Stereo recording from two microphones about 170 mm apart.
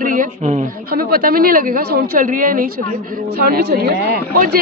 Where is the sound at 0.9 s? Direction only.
60° right (ahead or behind).